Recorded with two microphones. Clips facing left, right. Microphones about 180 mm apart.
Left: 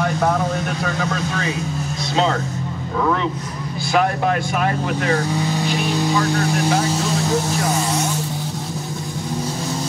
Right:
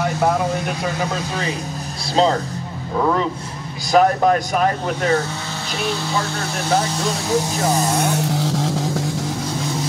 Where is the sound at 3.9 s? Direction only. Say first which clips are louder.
Right 4 dB; 40° right (ahead or behind).